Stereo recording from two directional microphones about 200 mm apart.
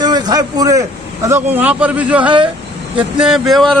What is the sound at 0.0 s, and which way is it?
A man's voice, 20° right (ahead or behind).